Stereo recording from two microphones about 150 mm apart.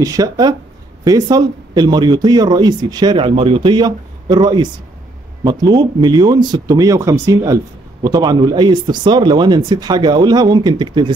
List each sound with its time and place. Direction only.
0.0 s speech: 25° right (ahead or behind)